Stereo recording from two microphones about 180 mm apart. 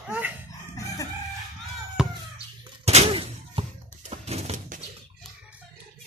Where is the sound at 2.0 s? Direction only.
5° right (ahead or behind).